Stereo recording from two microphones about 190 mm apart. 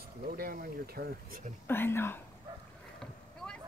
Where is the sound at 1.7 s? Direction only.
10° left (ahead or behind).